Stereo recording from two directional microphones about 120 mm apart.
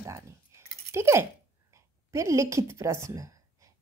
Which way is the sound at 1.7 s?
25° right (ahead or behind).